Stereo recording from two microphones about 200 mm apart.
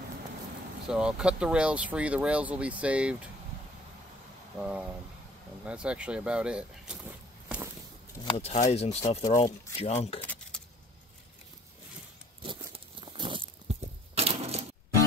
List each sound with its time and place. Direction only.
0.8 s speech: 5° right (ahead or behind)
4.6 s a sound: 5° right (ahead or behind)
5.7 s speech: 5° right (ahead or behind)
8.3 s speech: 35° left (ahead or behind)
10.2 s keys jangling: 10° left (ahead or behind)
12.4 s a sound: 25° right (ahead or behind)